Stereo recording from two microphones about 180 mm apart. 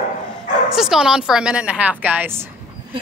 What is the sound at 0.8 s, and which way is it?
A woman's voice, 5° right (ahead or behind).